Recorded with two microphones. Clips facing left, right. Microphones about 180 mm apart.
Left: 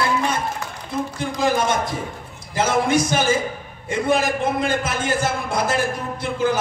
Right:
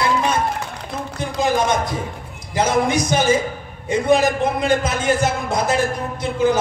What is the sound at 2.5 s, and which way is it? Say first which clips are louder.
A man's voice: right 1 dB; 15° right (ahead or behind).